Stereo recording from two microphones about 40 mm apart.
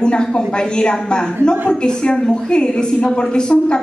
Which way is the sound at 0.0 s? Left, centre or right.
Left.